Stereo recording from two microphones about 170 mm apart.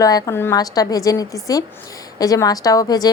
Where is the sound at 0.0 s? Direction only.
20° left (ahead or behind).